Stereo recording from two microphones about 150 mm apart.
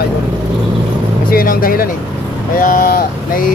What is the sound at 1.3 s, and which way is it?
Speech, 75° left (ahead or behind).